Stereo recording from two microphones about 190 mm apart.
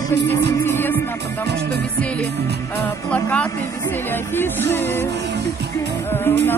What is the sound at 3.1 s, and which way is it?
Music, 5° left (ahead or behind).